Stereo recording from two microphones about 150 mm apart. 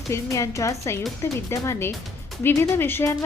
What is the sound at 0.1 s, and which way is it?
A woman's voice, 20° left (ahead or behind).